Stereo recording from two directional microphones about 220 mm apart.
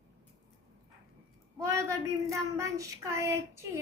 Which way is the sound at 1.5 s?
15° right (ahead or behind).